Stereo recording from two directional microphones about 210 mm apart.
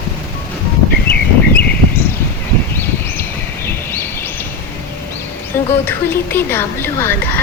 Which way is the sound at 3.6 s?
10° left (ahead or behind).